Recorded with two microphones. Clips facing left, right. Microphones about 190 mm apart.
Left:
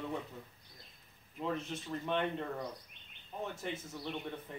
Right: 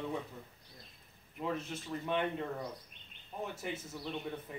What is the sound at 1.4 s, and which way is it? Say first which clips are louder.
Speech: even; centre (ahead or behind).